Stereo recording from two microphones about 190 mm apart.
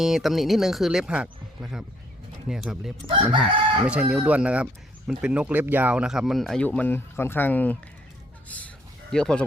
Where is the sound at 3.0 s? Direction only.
30° right (ahead or behind).